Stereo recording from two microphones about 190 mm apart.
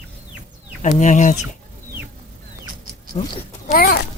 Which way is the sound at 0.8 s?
40° left (ahead or behind).